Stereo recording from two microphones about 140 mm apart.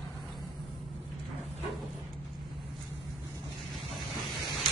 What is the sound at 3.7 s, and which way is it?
Vehicle, centre (ahead or behind).